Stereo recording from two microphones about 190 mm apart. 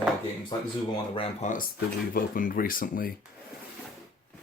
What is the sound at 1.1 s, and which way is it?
Speech, 30° left (ahead or behind).